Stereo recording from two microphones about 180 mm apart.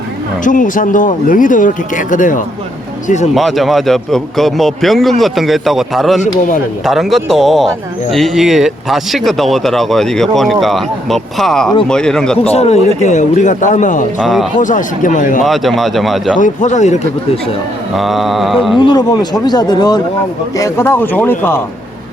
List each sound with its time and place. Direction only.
0.4 s speech: 45° left (ahead or behind)
3.3 s speech: centre (ahead or behind)
12.4 s a man's voice: 35° left (ahead or behind)
14.2 s speech: centre (ahead or behind)
14.6 s speech: 45° left (ahead or behind)
15.4 s speech: centre (ahead or behind)
16.4 s a man's voice: 45° left (ahead or behind)
17.9 s speech: centre (ahead or behind)
18.8 s speech: 25° left (ahead or behind)